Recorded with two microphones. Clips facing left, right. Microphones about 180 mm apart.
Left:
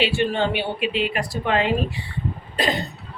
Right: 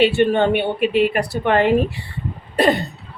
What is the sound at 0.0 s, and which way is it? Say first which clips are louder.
Speech: right 6 dB; 55° right (ahead or behind).